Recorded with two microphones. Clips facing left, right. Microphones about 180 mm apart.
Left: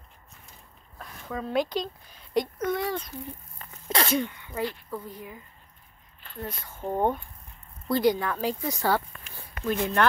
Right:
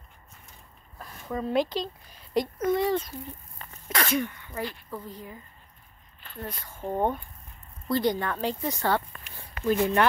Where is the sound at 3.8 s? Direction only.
25° left (ahead or behind).